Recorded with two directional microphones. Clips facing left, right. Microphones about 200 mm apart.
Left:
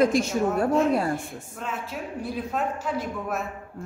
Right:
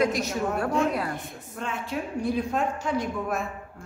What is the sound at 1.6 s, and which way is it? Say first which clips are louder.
A man's voice: right 2 dB; 5° left (ahead or behind).